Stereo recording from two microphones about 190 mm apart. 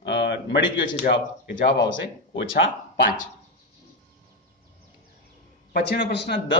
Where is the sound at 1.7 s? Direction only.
70° left (ahead or behind).